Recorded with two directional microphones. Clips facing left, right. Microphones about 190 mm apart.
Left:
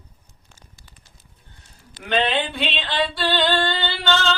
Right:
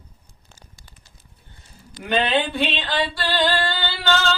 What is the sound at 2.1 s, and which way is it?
Speech, centre (ahead or behind).